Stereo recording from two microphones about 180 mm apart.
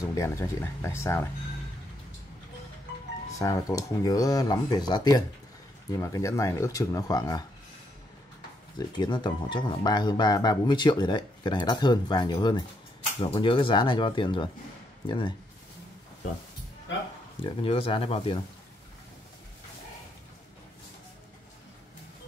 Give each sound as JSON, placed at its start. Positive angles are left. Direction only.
{"t": 0.1, "sound": "speech", "side_deg": 15}
{"t": 3.3, "sound": "speech", "side_deg": 20}
{"t": 8.7, "sound": "speech", "side_deg": 25}
{"t": 17.4, "sound": "speech", "side_deg": 30}